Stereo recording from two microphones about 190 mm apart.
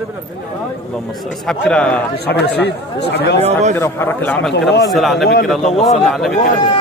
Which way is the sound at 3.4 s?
35° right (ahead or behind).